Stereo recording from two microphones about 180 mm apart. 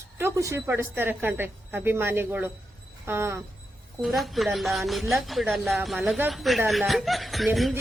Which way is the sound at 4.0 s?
Centre (ahead or behind).